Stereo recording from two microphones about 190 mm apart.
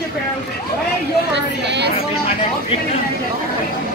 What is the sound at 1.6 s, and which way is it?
Speech, 65° right (ahead or behind).